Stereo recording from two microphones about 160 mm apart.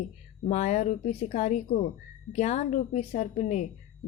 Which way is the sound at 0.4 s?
45° left (ahead or behind).